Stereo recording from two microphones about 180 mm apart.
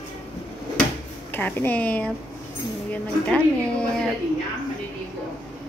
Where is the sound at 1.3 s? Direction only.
10° left (ahead or behind).